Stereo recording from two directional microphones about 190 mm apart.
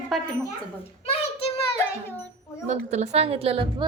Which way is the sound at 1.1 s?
30° left (ahead or behind).